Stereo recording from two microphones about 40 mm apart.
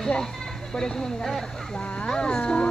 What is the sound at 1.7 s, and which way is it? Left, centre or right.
Speech, left.